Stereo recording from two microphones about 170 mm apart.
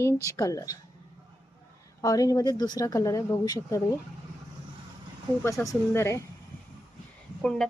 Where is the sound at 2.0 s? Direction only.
20° left (ahead or behind).